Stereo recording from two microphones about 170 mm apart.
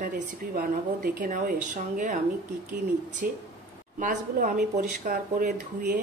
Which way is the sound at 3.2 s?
55° right (ahead or behind).